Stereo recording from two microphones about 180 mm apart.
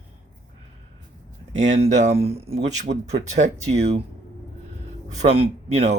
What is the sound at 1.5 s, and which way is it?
Speech, 40° right (ahead or behind).